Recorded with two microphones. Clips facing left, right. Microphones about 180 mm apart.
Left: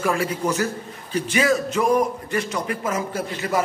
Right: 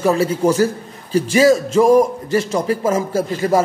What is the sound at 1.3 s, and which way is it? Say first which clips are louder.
A man's voice: right 8 dB; 35° right (ahead or behind).